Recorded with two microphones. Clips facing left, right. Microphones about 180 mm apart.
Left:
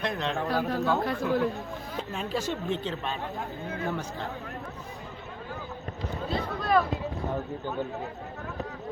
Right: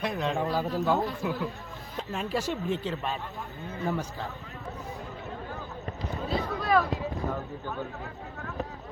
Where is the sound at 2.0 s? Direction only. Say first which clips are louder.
Right 1 dB; 5° right (ahead or behind).